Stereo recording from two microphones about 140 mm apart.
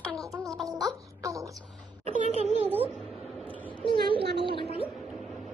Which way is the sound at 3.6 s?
35° left (ahead or behind).